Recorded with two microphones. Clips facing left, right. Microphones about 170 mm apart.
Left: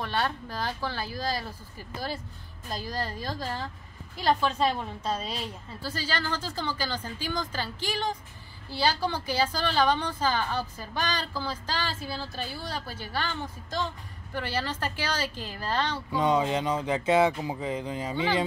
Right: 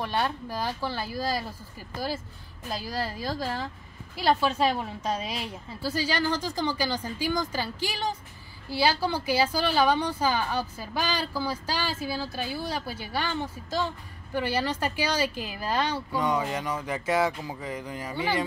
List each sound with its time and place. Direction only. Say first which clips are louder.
0.0 s a woman's voice: right 1 dB; 15° right (ahead or behind)
2.7 s a woman's voice: right 1 dB; 5° right (ahead or behind)
16.1 s speech: left 2 dB; 20° left (ahead or behind)